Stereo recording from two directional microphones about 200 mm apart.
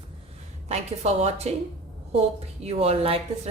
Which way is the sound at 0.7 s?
35° right (ahead or behind).